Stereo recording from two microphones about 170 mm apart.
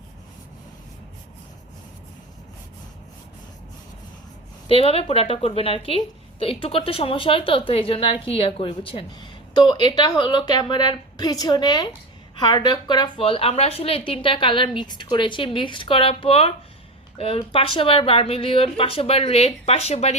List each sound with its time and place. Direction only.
4.7 s a woman's voice: 35° left (ahead or behind)